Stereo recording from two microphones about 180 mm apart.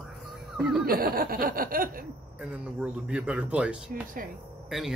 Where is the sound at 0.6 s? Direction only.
5° right (ahead or behind).